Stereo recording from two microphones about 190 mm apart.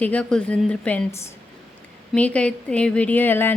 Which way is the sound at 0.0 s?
5° left (ahead or behind).